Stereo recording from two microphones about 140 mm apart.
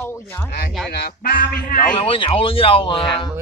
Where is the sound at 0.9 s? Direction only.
90° left.